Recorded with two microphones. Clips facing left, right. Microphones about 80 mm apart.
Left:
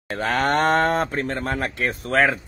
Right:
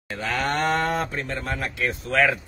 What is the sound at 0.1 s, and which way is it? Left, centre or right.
Speech, left.